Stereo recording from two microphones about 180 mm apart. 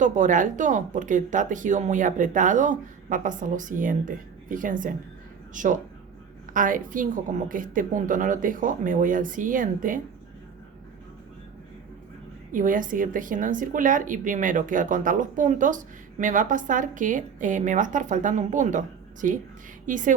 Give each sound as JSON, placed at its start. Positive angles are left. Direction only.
{"t": 0.0, "sound": "a woman's voice", "side_deg": -45}
{"t": 12.5, "sound": "a woman's voice", "side_deg": -50}